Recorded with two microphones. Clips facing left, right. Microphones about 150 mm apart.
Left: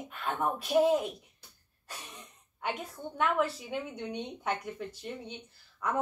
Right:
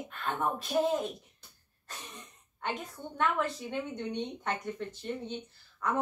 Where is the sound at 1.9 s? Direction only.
10° left (ahead or behind).